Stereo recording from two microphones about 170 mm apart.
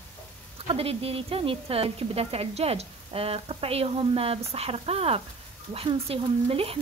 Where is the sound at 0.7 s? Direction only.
35° right (ahead or behind).